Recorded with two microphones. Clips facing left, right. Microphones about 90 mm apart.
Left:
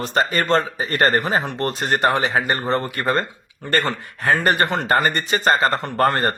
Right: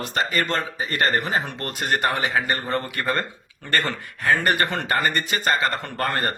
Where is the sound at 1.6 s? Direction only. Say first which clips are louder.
Left 6 dB; 25° left (ahead or behind).